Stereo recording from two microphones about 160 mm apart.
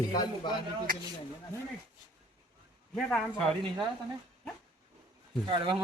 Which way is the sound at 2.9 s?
5° left (ahead or behind).